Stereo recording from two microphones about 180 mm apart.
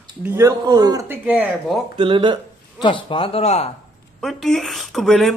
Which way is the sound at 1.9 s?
25° right (ahead or behind).